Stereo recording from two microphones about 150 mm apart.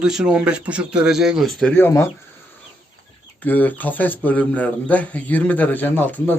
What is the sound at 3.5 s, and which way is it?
Speech, 10° left (ahead or behind).